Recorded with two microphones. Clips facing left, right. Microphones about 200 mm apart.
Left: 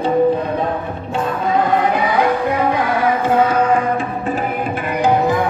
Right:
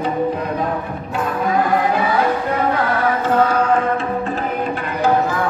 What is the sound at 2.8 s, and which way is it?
Music, 10° left (ahead or behind).